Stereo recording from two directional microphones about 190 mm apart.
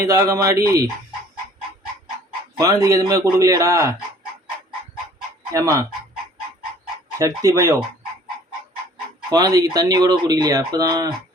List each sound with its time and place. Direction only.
0.0 s speech: 15° right (ahead or behind)
2.6 s speech: 20° right (ahead or behind)
5.5 s speech: 15° right (ahead or behind)
7.2 s speech: 15° right (ahead or behind)
9.3 s speech: 20° right (ahead or behind)